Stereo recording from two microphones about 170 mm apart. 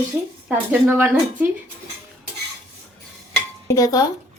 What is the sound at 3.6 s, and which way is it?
Dishes, 20° left (ahead or behind).